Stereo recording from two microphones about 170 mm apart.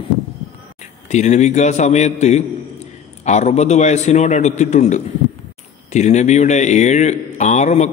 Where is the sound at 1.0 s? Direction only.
45° left (ahead or behind).